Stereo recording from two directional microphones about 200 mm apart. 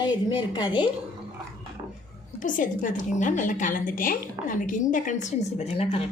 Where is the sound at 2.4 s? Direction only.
40° left (ahead or behind).